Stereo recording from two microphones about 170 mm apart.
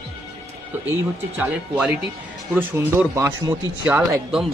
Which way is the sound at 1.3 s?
10° right (ahead or behind).